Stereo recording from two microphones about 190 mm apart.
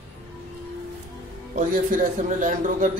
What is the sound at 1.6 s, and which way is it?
A man's voice, 45° right (ahead or behind).